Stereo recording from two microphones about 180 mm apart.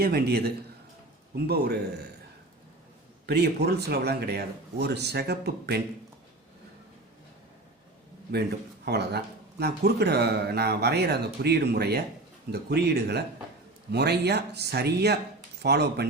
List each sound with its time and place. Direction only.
0.0 s speech: 60° right (ahead or behind)
3.2 s speech: 65° right (ahead or behind)
8.3 s speech: 65° right (ahead or behind)